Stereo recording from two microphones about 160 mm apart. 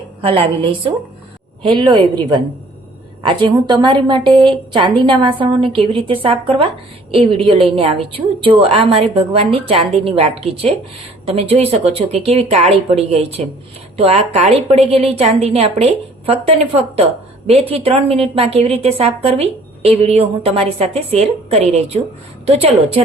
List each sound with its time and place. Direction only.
0.2 s a woman's voice: 35° right (ahead or behind)
3.2 s a woman's voice: 30° right (ahead or behind)